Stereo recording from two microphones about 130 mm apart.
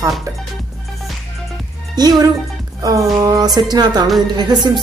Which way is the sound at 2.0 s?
30° right (ahead or behind).